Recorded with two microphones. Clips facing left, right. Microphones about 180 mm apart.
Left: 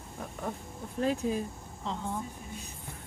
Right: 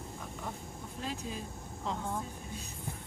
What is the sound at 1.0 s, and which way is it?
Speech, 50° left (ahead or behind).